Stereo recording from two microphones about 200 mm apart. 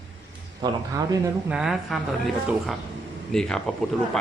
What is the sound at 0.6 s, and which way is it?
Speech, 15° right (ahead or behind).